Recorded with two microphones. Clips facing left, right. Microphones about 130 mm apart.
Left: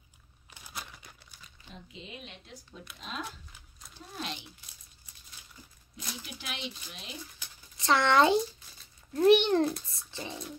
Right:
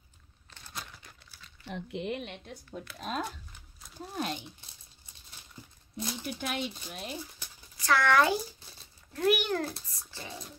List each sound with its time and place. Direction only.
0.5 s crumpling: 10° left (ahead or behind)
1.7 s speech: 65° right (ahead or behind); by 3.3 s 45° right (ahead or behind)
3.3 s a sound: 5° left (ahead or behind)
4.2 s speech: 45° right (ahead or behind)
6.2 s speech: 50° right (ahead or behind)
7.7 s a child's voice: 25° left (ahead or behind)